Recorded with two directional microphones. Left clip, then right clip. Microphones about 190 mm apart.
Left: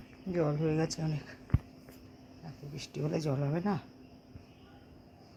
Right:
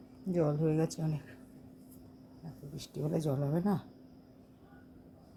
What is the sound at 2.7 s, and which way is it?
Speech, centre (ahead or behind).